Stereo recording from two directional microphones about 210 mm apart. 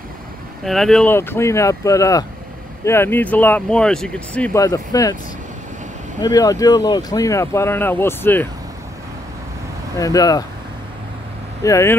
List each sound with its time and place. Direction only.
0.7 s speech: centre (ahead or behind)
4.6 s speech: 15° left (ahead or behind)
6.2 s speech: 15° left (ahead or behind)
9.9 s speech: 15° left (ahead or behind)
11.6 s speech: 15° left (ahead or behind)